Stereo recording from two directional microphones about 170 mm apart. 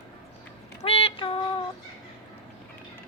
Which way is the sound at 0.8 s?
35° left (ahead or behind).